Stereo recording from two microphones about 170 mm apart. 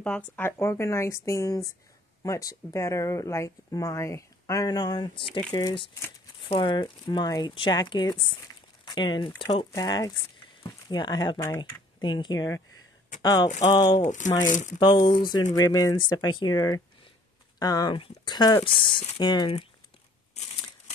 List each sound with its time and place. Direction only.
0.0 s speech: 10° left (ahead or behind)
13.9 s speech: 45° left (ahead or behind)
14.8 s speech: 25° left (ahead or behind)